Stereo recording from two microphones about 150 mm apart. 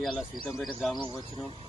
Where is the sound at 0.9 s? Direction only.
30° left (ahead or behind).